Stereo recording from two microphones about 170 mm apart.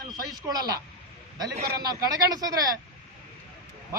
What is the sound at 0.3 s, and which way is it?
Speech, 20° right (ahead or behind).